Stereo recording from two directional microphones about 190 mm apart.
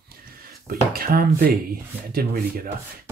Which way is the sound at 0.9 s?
50° right (ahead or behind).